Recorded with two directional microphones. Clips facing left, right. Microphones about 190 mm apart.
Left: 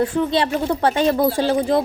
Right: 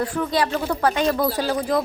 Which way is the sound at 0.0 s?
25° left (ahead or behind).